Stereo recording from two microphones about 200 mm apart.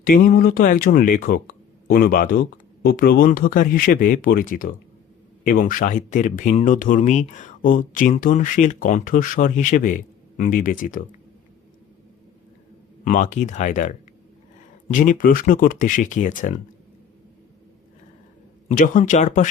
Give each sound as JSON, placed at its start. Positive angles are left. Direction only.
{"t": 0.0, "sound": "speech", "side_deg": 45}
{"t": 13.1, "sound": "speech", "side_deg": 40}
{"t": 18.7, "sound": "speech", "side_deg": 40}